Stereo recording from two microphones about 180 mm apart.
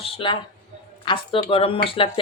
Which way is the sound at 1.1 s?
30° left (ahead or behind).